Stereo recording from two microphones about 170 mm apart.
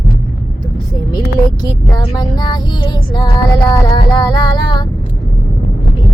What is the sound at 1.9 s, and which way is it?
Music, 25° left (ahead or behind).